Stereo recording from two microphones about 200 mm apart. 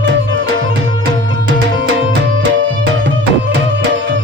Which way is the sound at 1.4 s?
60° right (ahead or behind).